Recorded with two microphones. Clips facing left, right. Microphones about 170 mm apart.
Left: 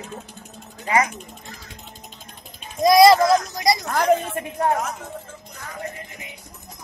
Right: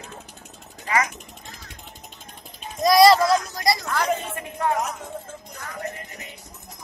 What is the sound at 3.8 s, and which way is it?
Speech, 45° left (ahead or behind).